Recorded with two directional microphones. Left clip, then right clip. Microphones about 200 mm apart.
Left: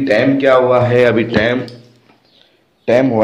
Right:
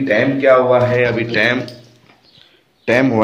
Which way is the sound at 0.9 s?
50° left (ahead or behind).